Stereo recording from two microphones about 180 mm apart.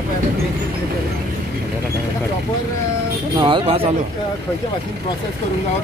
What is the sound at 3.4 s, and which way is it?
Speech, 30° right (ahead or behind).